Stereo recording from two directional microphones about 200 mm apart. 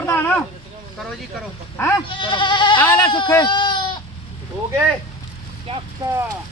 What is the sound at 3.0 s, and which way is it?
Speech, 25° left (ahead or behind).